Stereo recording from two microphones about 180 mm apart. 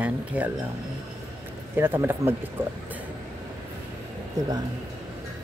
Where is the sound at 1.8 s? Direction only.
15° right (ahead or behind).